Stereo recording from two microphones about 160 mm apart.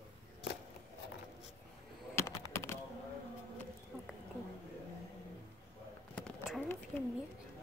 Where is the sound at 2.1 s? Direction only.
20° left (ahead or behind).